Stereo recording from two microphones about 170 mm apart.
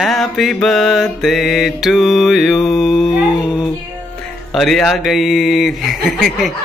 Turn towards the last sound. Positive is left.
turn(degrees=0)  # may be behind; listen again after turning